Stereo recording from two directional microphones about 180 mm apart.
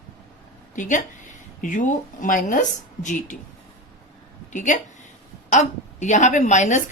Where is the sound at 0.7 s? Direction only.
45° left (ahead or behind).